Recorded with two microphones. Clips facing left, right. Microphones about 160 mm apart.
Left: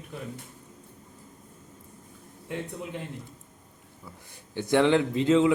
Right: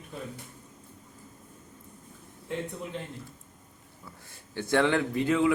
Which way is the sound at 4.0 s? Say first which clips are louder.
Left 2 dB; 15° left (ahead or behind).